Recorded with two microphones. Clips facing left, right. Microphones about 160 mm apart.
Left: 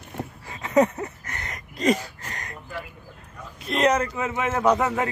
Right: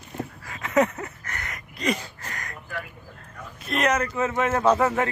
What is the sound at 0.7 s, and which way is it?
Speech, 15° left (ahead or behind).